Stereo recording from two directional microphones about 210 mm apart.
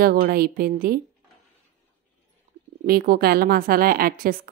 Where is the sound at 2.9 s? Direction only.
45° right (ahead or behind).